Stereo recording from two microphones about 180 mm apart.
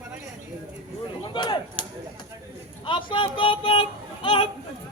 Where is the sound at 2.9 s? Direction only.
25° left (ahead or behind).